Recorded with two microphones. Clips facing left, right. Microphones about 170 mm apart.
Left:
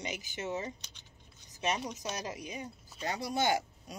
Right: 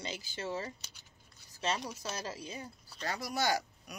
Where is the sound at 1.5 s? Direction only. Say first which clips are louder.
Left 1 dB; 15° left (ahead or behind).